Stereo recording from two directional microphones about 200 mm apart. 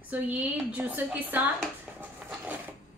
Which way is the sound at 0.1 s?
10° right (ahead or behind).